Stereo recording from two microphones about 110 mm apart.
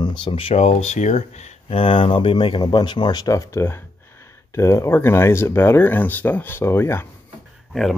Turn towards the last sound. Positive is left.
turn(degrees=0)  # may be behind; listen again after turning